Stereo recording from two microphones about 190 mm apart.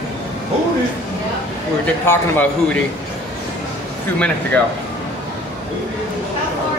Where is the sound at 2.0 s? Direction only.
10° left (ahead or behind).